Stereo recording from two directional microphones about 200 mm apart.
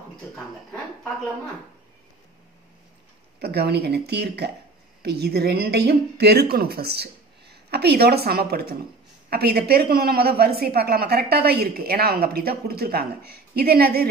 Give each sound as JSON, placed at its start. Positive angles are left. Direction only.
{"t": 3.3, "sound": "speech", "side_deg": -55}